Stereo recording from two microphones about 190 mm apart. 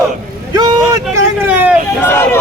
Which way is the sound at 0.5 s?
20° right (ahead or behind).